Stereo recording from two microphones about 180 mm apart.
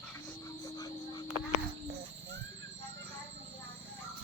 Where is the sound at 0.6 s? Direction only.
20° left (ahead or behind).